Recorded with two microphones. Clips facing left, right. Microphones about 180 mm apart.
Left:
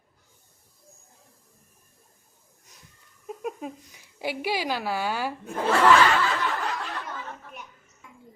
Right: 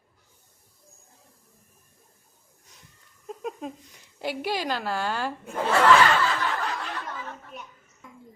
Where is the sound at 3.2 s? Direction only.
10° left (ahead or behind).